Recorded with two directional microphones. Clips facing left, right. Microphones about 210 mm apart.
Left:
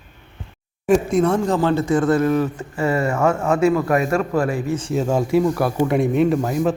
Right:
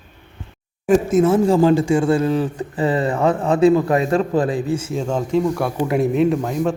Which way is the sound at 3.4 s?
35° right (ahead or behind).